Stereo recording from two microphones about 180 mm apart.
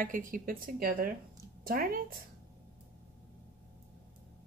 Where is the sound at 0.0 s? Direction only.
50° right (ahead or behind).